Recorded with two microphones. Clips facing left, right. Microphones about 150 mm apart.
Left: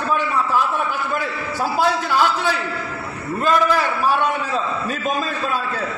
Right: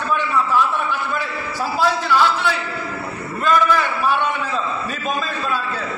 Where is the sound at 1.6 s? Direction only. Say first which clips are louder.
Left 1 dB; 45° left (ahead or behind).